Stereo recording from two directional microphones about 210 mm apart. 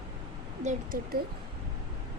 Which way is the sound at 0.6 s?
35° right (ahead or behind).